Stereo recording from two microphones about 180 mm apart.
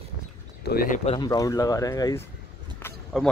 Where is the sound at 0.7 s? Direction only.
50° left (ahead or behind).